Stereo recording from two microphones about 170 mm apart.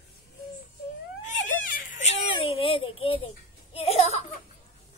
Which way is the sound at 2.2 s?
30° left (ahead or behind).